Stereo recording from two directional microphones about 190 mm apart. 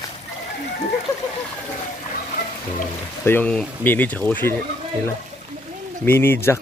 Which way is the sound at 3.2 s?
10° left (ahead or behind).